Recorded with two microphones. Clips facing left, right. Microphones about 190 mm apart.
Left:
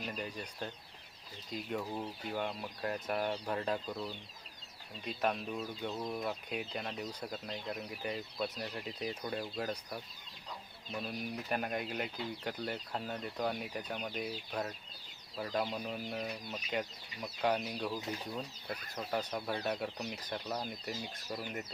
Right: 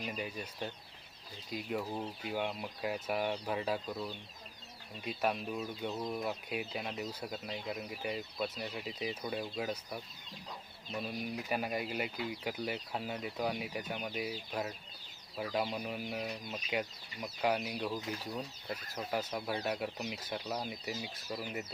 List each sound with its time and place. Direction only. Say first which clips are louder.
0.0 s speech: right 1 dB; 5° right (ahead or behind)